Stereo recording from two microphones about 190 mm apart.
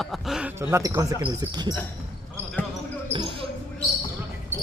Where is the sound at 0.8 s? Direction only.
15° right (ahead or behind).